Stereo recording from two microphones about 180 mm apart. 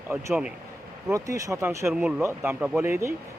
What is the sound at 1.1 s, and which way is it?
Speech, 15° right (ahead or behind).